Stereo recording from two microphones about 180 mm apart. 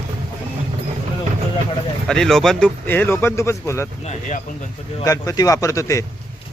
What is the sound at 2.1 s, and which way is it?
Speech, 5° left (ahead or behind).